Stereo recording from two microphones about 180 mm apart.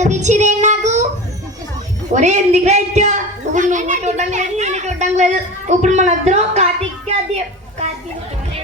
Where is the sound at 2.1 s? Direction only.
40° right (ahead or behind).